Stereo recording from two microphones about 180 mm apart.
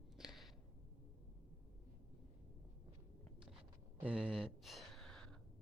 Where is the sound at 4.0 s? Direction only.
5° right (ahead or behind).